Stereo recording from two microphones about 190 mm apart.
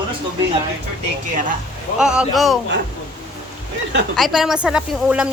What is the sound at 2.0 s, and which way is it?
Speech, 5° right (ahead or behind).